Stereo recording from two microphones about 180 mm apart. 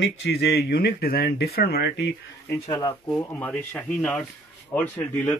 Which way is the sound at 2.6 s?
25° left (ahead or behind).